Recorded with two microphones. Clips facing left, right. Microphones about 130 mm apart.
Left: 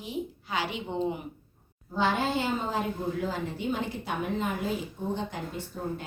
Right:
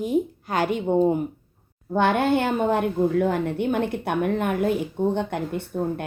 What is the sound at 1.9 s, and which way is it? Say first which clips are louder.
Speech: right 7 dB; 60° right (ahead or behind).